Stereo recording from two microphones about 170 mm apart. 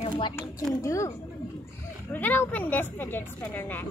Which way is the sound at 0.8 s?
15° left (ahead or behind).